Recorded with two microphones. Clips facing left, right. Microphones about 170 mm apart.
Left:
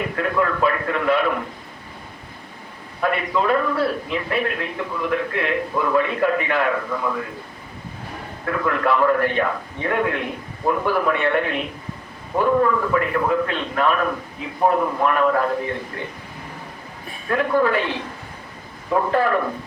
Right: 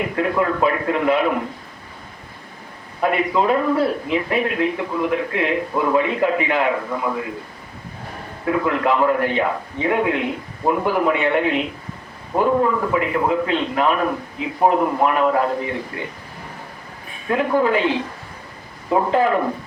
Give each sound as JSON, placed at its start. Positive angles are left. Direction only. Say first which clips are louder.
{"t": 0.2, "sound": "a man's voice", "louder": "right 2 dB", "side_deg": -20}
{"t": 3.0, "sound": "a man's voice", "louder": "right 3 dB", "side_deg": -20}
{"t": 8.4, "sound": "a man's voice", "louder": "right 2 dB", "side_deg": -15}
{"t": 17.2, "sound": "a man's voice", "louder": "right 1 dB", "side_deg": -15}